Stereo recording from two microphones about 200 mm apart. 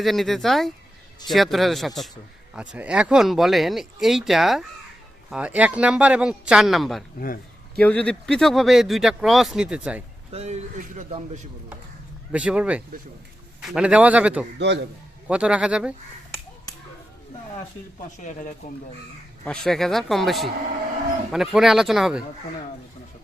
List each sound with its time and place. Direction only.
0.0 s speech: centre (ahead or behind)
10.3 s speech: 35° right (ahead or behind)
12.3 s speech: 5° right (ahead or behind)
18.2 s speech: 40° left (ahead or behind)
19.5 s speech: centre (ahead or behind)